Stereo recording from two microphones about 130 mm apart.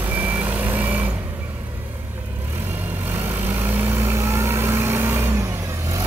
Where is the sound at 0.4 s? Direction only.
15° right (ahead or behind).